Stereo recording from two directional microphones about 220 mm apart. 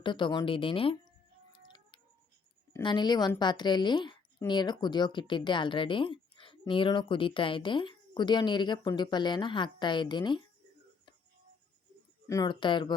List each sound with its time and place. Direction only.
0.0 s a woman's voice: 20° left (ahead or behind)
2.7 s a woman's voice: 20° left (ahead or behind)
12.3 s a woman's voice: 20° left (ahead or behind)